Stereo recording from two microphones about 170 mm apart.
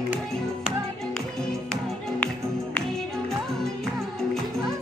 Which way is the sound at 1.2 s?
5° left (ahead or behind).